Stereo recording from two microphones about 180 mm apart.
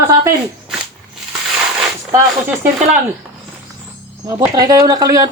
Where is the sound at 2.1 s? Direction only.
15° right (ahead or behind).